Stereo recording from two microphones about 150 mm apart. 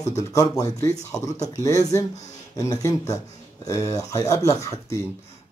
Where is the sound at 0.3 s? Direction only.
20° left (ahead or behind).